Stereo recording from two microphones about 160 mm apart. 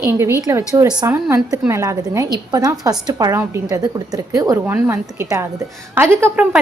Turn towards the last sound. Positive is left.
turn(degrees=-15)  # may be behind; listen again after turning